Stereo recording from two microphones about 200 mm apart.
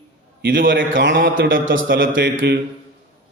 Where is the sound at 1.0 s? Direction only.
65° right (ahead or behind).